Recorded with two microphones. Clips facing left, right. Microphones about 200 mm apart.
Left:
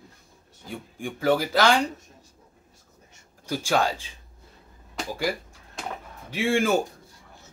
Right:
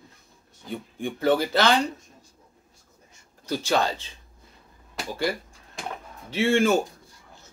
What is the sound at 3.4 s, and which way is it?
Speech, 10° left (ahead or behind).